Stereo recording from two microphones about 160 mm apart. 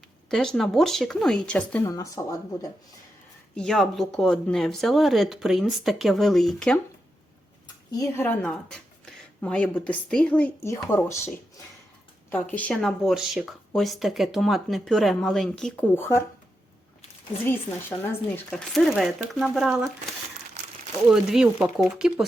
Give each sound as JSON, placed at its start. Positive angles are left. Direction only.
{"t": 0.3, "sound": "speech", "side_deg": 5}
{"t": 1.8, "sound": "speech", "side_deg": 20}
{"t": 3.5, "sound": "speech", "side_deg": 5}
{"t": 7.9, "sound": "speech", "side_deg": 15}
{"t": 12.3, "sound": "speech", "side_deg": 10}
{"t": 17.4, "sound": "speech", "side_deg": 15}
{"t": 18.5, "sound": "speech", "side_deg": 0}
{"t": 21.1, "sound": "speech", "side_deg": -5}